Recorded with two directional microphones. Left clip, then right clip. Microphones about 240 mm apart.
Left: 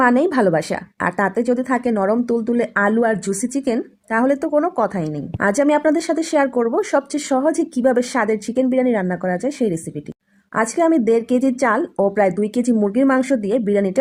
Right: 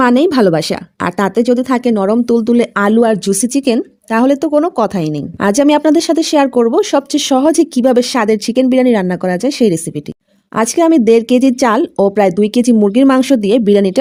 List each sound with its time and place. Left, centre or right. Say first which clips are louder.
0.0 s speech: right 5 dB; right